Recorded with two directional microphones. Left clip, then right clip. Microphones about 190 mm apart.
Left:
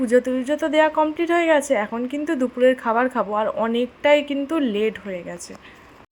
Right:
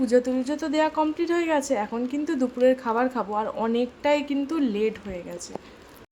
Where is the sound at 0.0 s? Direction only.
15° left (ahead or behind).